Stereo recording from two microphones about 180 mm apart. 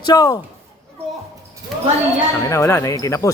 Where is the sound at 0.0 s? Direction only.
20° left (ahead or behind).